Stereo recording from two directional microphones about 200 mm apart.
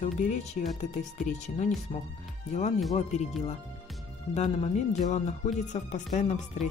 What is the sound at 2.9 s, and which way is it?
Speech, 35° left (ahead or behind).